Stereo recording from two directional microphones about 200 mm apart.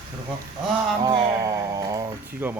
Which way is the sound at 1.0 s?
20° right (ahead or behind).